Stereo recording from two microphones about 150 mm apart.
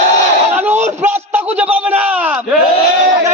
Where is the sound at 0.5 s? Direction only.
15° right (ahead or behind).